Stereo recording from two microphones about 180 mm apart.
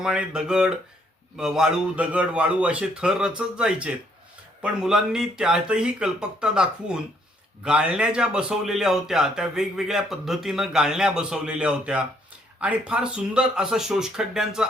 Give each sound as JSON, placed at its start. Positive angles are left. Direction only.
{"t": 0.0, "sound": "speech", "side_deg": -5}